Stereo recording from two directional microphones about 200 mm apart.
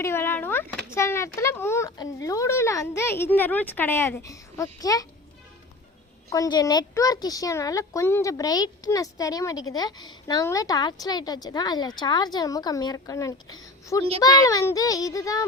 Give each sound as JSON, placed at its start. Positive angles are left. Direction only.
{"t": 0.0, "sound": "a child's voice", "side_deg": 10}
{"t": 6.3, "sound": "a child's voice", "side_deg": 20}